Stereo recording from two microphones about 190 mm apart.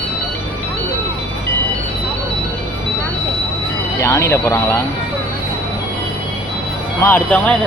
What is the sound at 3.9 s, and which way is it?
Speech, 15° left (ahead or behind).